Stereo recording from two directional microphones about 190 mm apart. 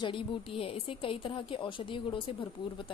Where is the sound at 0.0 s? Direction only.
25° left (ahead or behind).